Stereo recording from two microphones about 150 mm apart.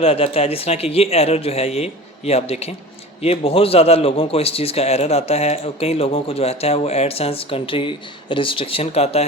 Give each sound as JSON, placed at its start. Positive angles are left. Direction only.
{"t": 0.0, "sound": "a man's voice", "side_deg": 40}